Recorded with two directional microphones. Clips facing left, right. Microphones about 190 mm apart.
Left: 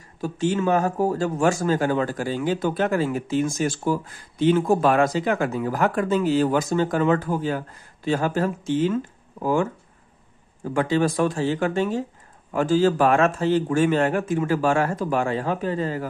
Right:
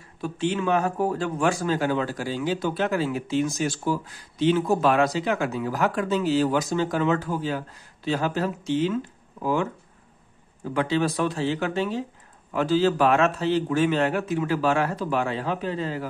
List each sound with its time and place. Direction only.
0.2 s speech: 40° left (ahead or behind)
10.7 s speech: 45° left (ahead or behind)